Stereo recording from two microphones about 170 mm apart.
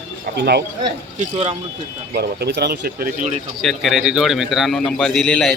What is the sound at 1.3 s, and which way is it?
Speech, 35° right (ahead or behind).